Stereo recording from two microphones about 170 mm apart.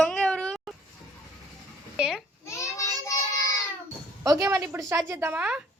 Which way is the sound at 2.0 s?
5° right (ahead or behind).